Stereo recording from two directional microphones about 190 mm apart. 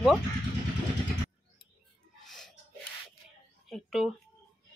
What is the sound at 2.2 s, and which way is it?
Music, centre (ahead or behind).